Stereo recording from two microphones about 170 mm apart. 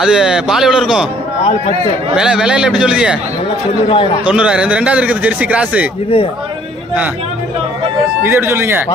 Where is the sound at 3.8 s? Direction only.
30° left (ahead or behind).